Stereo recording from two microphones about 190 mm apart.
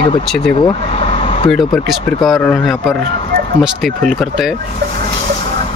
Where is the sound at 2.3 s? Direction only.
10° left (ahead or behind).